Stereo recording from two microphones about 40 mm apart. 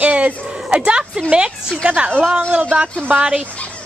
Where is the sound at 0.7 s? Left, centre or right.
Right.